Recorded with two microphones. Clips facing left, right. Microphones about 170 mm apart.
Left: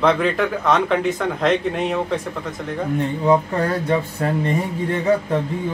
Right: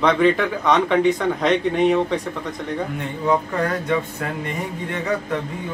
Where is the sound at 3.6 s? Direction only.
30° left (ahead or behind).